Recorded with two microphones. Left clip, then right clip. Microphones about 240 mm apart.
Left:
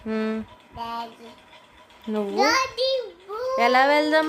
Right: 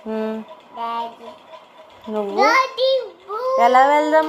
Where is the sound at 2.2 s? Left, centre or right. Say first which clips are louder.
Right 5 dB; centre.